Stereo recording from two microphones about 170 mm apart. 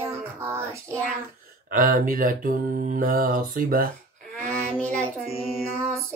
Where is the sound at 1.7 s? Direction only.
50° right (ahead or behind).